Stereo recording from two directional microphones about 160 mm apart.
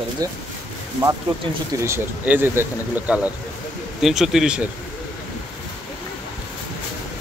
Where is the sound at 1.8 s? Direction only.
15° right (ahead or behind).